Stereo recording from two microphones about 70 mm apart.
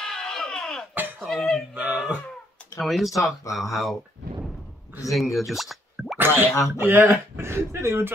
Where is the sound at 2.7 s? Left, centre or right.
Centre.